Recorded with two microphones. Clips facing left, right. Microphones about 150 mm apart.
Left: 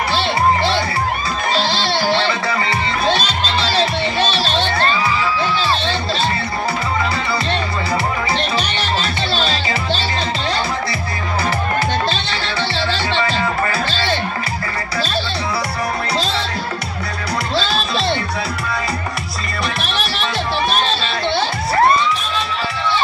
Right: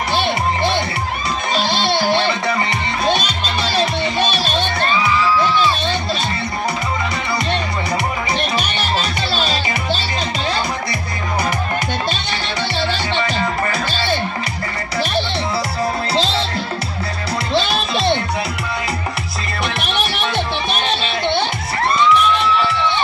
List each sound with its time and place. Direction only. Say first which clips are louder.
1.5 s music: right 1 dB; 15° right (ahead or behind)
9.3 s music: left 1 dB; 15° right (ahead or behind)
13.1 s music: left 1 dB; 15° right (ahead or behind)
16.2 s music: right 5 dB; 25° right (ahead or behind)
17.6 s music: right 2 dB; 15° right (ahead or behind)
19.8 s music: right 1 dB; 20° right (ahead or behind)
22.1 s music: right 7 dB; 65° right (ahead or behind)